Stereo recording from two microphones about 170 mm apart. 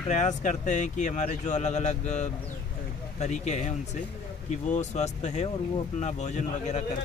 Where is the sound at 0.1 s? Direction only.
45° left (ahead or behind).